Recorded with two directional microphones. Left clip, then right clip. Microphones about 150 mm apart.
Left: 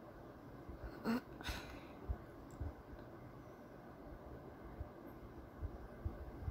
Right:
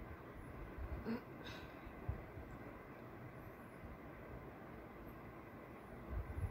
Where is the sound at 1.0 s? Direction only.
90° left.